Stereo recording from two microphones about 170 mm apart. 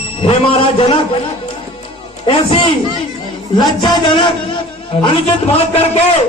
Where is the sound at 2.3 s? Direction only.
30° left (ahead or behind).